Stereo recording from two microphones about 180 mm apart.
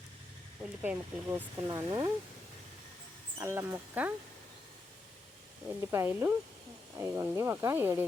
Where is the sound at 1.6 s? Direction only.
20° right (ahead or behind).